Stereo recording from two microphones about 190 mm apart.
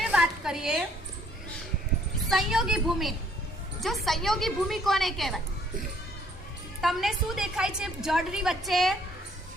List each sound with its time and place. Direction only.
0.0 s a sound: 5° right (ahead or behind)
2.3 s a woman's voice: 5° right (ahead or behind)
6.8 s a woman's voice: centre (ahead or behind)